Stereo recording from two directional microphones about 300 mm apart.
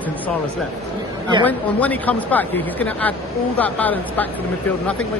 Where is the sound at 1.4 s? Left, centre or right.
Centre.